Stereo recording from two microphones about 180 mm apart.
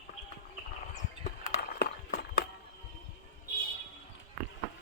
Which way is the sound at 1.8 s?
65° left (ahead or behind).